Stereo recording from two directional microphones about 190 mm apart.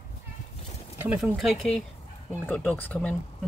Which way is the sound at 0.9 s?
5° right (ahead or behind).